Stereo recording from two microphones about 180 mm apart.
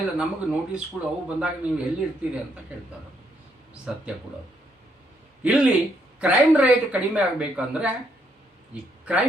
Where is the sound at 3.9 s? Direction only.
5° right (ahead or behind).